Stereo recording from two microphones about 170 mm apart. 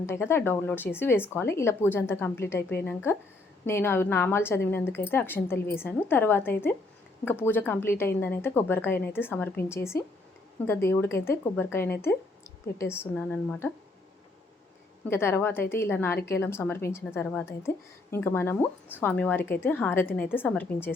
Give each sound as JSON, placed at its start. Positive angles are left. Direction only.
{"t": 0.0, "sound": "a woman's voice", "side_deg": 15}
{"t": 15.1, "sound": "a woman's voice", "side_deg": 15}